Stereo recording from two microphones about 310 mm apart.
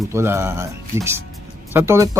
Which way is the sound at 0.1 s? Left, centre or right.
Centre.